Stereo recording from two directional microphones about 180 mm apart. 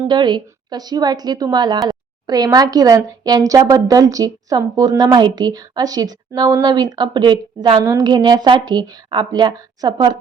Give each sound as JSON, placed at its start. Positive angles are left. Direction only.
{"t": 0.1, "sound": "a woman's voice", "side_deg": -25}